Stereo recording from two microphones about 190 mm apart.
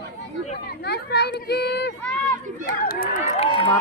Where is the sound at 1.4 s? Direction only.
60° left (ahead or behind).